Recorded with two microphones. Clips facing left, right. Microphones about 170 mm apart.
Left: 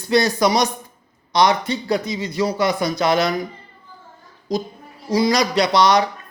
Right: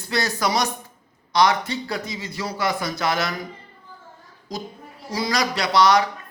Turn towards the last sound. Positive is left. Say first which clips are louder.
# left 2 dB
turn(degrees=20)  # may be behind; listen again after turning